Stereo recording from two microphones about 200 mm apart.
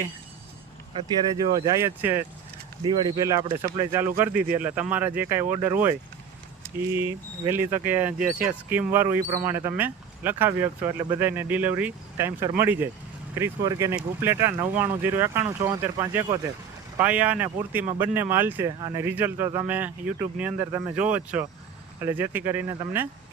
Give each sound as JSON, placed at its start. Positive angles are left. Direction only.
{"t": 1.5, "sound": "speech", "side_deg": -15}
{"t": 7.4, "sound": "speech", "side_deg": -10}